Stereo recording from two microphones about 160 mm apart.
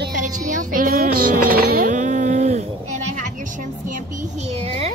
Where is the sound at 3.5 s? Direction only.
50° right (ahead or behind).